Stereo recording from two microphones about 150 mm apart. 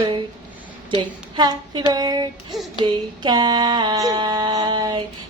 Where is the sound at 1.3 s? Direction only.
25° right (ahead or behind).